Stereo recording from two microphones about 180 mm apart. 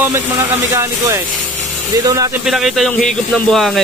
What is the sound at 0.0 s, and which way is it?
Speech, 15° right (ahead or behind).